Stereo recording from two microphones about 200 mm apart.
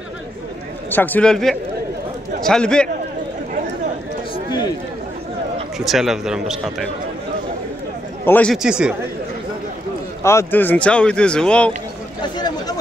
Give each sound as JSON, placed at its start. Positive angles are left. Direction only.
{"t": 0.8, "sound": "speech", "side_deg": 10}
{"t": 5.8, "sound": "speech", "side_deg": 0}
{"t": 8.3, "sound": "a man's voice", "side_deg": 5}
{"t": 8.6, "sound": "speech", "side_deg": -5}
{"t": 10.2, "sound": "speech", "side_deg": 10}
{"t": 12.2, "sound": "chatter", "side_deg": 20}